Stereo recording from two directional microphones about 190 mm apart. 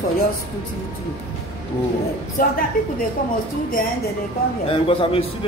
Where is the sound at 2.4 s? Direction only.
50° left (ahead or behind).